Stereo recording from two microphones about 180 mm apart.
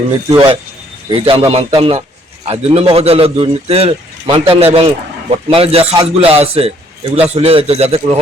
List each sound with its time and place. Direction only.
0.3 s a man's voice: 30° right (ahead or behind)